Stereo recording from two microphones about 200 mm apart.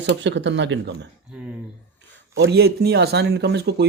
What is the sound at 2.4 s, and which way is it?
Speech, 55° right (ahead or behind).